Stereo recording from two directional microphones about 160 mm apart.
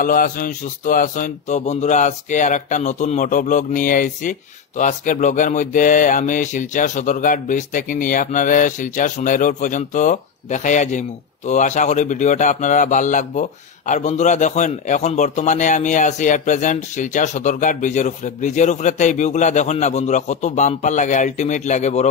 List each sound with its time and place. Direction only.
0.0 s mantra: 60° left (ahead or behind)